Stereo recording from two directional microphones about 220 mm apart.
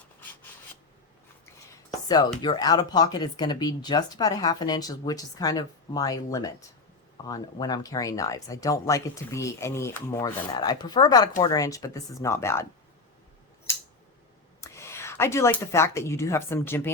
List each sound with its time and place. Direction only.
2.4 s speech: 20° left (ahead or behind)
14.6 s speech: 10° left (ahead or behind)